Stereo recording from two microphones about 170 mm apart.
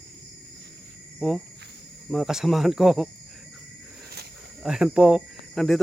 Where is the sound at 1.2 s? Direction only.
Centre (ahead or behind).